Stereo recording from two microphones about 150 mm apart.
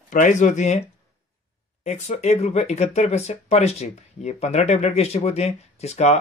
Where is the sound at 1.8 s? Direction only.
50° left (ahead or behind).